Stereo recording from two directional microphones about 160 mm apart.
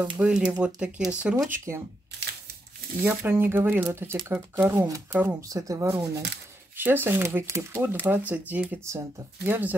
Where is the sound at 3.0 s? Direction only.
15° right (ahead or behind).